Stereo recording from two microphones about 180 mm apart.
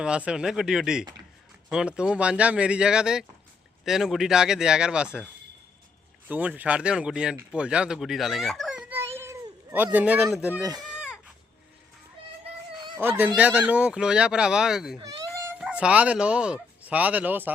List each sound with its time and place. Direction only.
0.0 s speech: 5° right (ahead or behind)
6.2 s speech: 10° right (ahead or behind)
10.8 s a sound: 5° right (ahead or behind)
13.0 s speech: 10° right (ahead or behind)
14.9 s baby cry: 20° right (ahead or behind)
15.5 s speech: 5° right (ahead or behind)